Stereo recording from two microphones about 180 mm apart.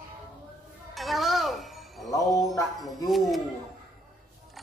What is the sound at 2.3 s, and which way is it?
Wind chime, 20° left (ahead or behind).